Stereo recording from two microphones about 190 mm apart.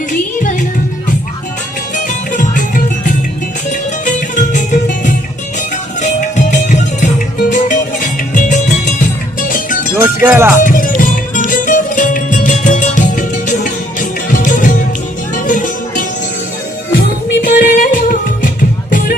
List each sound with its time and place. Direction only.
2.0 s music: 40° left (ahead or behind)
10.0 s speech: 15° right (ahead or behind)
10.6 s music: 45° left (ahead or behind)
17.4 s music: 45° left (ahead or behind)